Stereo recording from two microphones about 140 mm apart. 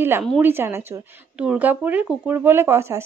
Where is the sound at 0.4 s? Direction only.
15° right (ahead or behind).